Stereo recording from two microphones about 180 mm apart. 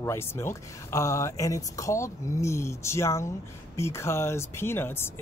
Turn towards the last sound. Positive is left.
turn(degrees=15)  # may be behind; listen again after turning